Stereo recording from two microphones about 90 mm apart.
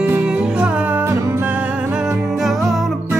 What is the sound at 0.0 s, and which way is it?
Music, 20° right (ahead or behind).